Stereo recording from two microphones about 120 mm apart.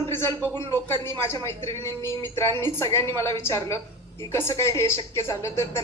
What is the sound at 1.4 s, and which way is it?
A woman's voice, 20° left (ahead or behind).